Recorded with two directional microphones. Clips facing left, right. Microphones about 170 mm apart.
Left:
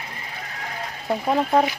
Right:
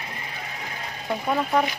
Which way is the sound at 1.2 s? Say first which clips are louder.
Left 3 dB; 30° left (ahead or behind).